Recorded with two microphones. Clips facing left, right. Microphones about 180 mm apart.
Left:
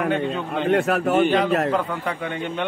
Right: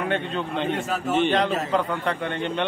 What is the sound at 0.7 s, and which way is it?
Speech, 65° left (ahead or behind).